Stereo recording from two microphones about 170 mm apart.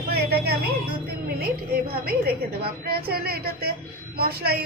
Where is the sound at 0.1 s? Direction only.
70° right (ahead or behind).